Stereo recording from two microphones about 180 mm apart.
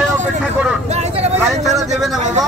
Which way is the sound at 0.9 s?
35° right (ahead or behind).